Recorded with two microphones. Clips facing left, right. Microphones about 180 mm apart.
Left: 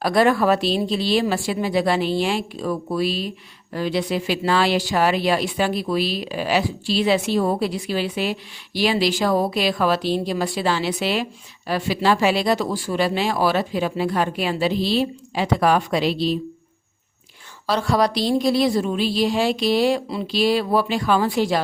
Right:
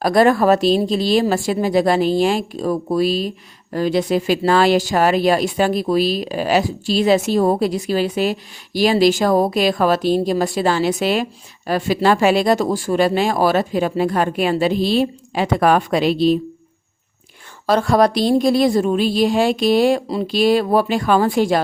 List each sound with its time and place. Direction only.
0.0 s speech: 45° right (ahead or behind)
17.7 s speech: 50° right (ahead or behind)